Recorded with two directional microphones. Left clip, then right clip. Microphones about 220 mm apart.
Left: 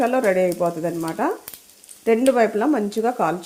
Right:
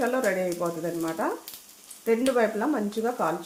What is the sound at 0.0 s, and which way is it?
Speech, 40° left (ahead or behind).